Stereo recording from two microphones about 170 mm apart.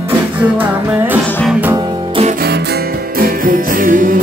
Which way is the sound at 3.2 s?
55° right (ahead or behind).